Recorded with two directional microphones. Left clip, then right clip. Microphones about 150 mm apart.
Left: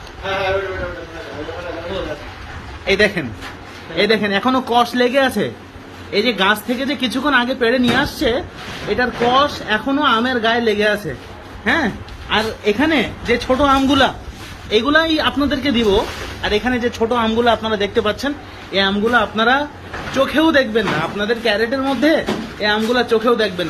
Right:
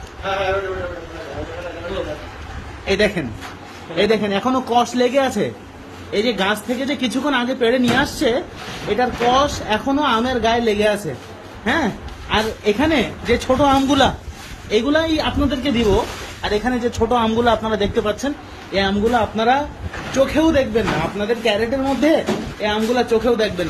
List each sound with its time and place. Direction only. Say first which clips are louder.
2.9 s a man's voice: left 3 dB; 20° right (ahead or behind)
3.9 s a man's voice: left 2 dB; centre (ahead or behind); by 14.1 s 20° right (ahead or behind)
14.7 s a man's voice: left 3 dB; centre (ahead or behind)